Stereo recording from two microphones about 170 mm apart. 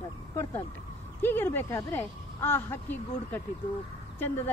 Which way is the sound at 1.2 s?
10° left (ahead or behind).